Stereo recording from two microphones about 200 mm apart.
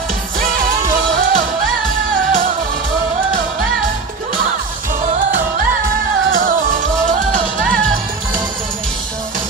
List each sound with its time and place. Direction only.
1.1 s music: 45° right (ahead or behind)
6.3 s music: 45° right (ahead or behind)